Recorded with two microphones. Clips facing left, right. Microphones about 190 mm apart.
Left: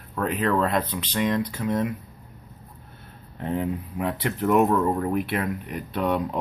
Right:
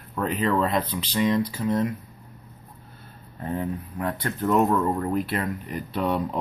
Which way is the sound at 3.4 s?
15° left (ahead or behind).